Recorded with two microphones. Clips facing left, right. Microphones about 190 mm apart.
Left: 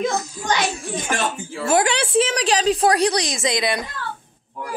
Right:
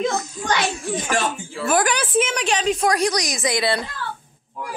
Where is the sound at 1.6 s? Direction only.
25° left (ahead or behind).